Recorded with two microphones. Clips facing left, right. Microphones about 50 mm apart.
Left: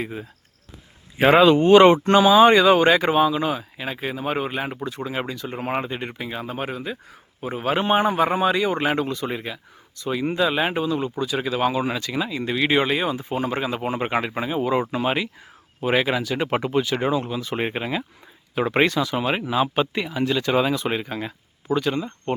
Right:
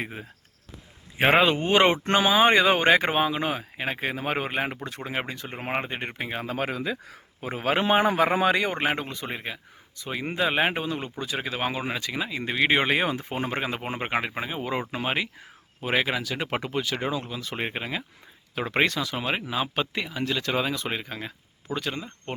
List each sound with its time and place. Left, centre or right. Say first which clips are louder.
0.0 s speech: left 4 dB; right
5.8 s speech: left 2 dB; right
6.5 s a man's voice: even; right
8.7 s speech: left 4 dB; right
9.0 s speech: left 7 dB; centre
10.6 s speech: left 3 dB; right
12.8 s speech: left 2 dB; right; by 15.3 s centre
15.8 s speech: left 4 dB; centre